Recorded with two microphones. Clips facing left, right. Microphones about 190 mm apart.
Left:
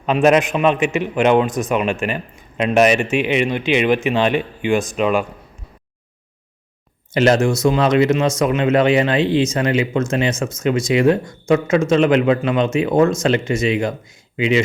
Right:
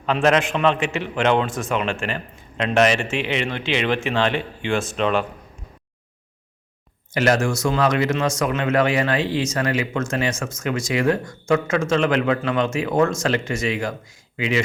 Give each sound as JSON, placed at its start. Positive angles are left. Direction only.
{"t": 0.0, "sound": "a man's voice", "side_deg": 15}
{"t": 7.1, "sound": "speech", "side_deg": 25}